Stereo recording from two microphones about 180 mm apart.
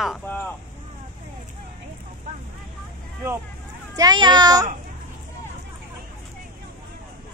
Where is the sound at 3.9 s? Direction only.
25° right (ahead or behind).